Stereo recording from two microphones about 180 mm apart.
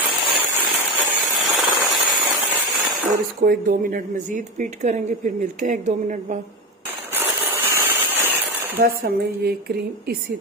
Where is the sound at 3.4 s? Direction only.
50° right (ahead or behind).